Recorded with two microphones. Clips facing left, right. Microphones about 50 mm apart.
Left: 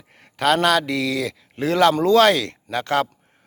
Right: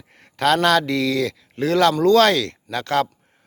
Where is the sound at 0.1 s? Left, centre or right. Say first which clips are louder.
Right 1 dB; centre.